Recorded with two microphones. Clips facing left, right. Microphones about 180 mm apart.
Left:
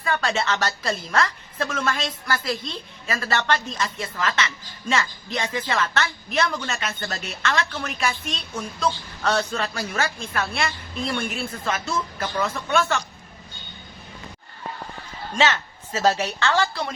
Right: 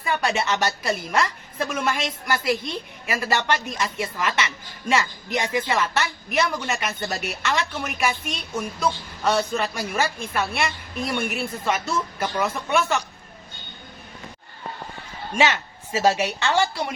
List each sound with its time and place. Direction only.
0.0 s a woman's voice: 15° right (ahead or behind)
15.4 s a woman's voice: 15° right (ahead or behind)